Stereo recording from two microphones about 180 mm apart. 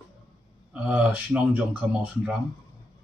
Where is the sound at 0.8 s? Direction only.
5° right (ahead or behind).